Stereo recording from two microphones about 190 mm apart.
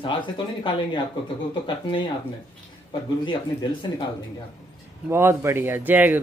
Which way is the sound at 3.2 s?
25° left (ahead or behind).